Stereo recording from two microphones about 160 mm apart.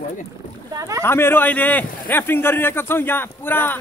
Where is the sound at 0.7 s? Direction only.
20° right (ahead or behind).